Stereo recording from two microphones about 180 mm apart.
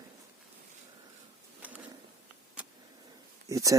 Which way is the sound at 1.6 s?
10° right (ahead or behind).